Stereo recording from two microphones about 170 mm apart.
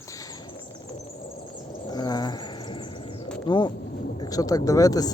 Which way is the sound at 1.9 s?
25° left (ahead or behind).